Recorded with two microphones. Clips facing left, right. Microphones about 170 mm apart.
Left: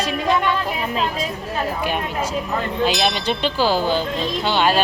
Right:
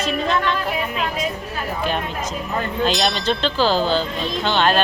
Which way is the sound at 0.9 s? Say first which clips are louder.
Left 2 dB; 30° left (ahead or behind).